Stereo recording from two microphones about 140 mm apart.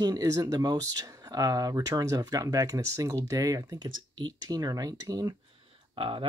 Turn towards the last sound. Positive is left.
turn(degrees=-40)  # may be behind; listen again after turning